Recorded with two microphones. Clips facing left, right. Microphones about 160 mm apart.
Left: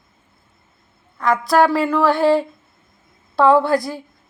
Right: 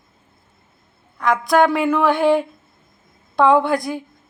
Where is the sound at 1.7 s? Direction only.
20° right (ahead or behind).